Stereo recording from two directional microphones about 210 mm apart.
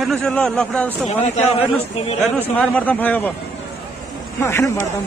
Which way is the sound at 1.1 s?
30° left (ahead or behind).